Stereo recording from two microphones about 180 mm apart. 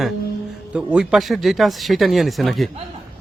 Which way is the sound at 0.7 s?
5° right (ahead or behind).